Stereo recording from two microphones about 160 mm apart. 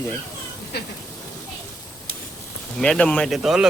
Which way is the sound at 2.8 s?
5° left (ahead or behind).